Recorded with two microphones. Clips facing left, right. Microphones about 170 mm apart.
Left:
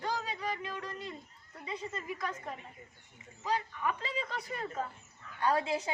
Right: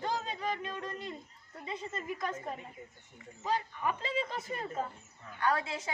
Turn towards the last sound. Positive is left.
turn(degrees=15)  # may be behind; listen again after turning